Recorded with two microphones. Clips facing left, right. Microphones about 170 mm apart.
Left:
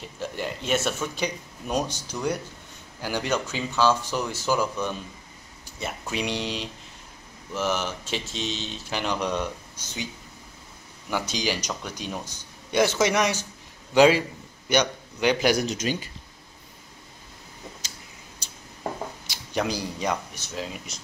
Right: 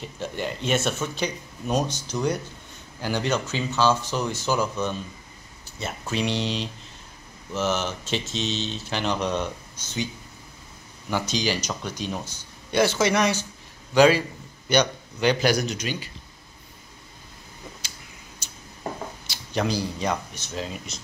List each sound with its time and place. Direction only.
0.2 s speech: 5° left (ahead or behind)
11.1 s a man's voice: 10° left (ahead or behind)
15.6 s speech: 35° left (ahead or behind)
19.2 s speech: 10° left (ahead or behind)